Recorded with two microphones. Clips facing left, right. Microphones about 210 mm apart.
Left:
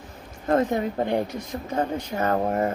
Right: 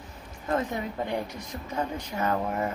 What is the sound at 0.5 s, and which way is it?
Speech, 45° left (ahead or behind).